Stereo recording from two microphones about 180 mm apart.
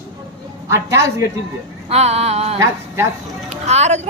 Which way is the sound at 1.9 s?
35° right (ahead or behind).